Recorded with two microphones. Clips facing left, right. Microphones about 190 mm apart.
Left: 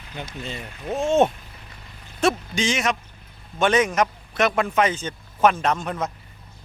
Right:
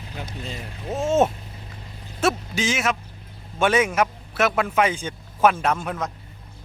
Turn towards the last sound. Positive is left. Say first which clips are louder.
# even
turn(degrees=-10)  # may be behind; listen again after turning